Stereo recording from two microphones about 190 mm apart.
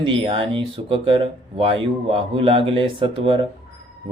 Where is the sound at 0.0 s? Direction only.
25° right (ahead or behind).